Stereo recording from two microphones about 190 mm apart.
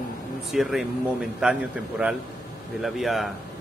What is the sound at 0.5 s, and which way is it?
Speech, centre (ahead or behind).